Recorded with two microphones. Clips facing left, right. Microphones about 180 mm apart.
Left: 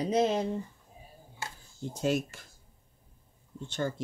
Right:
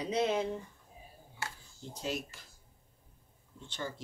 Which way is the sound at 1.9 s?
50° left (ahead or behind).